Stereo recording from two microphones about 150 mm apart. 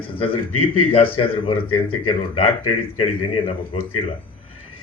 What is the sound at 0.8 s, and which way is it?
A man's voice, 40° left (ahead or behind).